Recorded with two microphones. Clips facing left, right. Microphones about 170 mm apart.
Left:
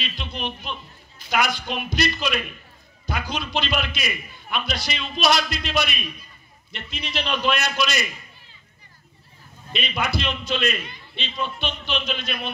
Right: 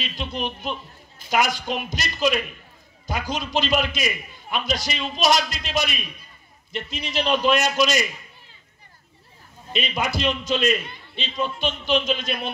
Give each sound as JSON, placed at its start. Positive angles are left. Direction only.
{"t": 0.0, "sound": "a man's voice", "side_deg": -45}
{"t": 9.7, "sound": "a man's voice", "side_deg": -40}